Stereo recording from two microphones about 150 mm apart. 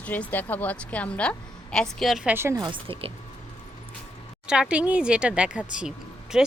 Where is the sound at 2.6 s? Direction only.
35° right (ahead or behind).